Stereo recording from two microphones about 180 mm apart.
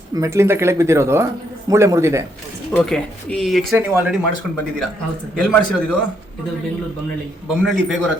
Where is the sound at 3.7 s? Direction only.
10° right (ahead or behind).